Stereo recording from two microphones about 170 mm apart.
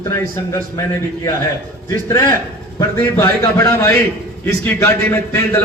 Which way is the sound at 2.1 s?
20° left (ahead or behind).